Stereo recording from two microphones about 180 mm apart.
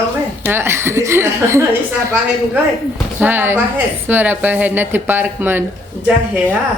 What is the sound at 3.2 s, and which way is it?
Speech, 10° right (ahead or behind).